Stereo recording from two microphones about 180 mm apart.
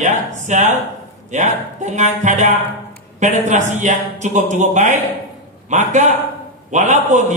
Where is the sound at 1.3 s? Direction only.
40° right (ahead or behind).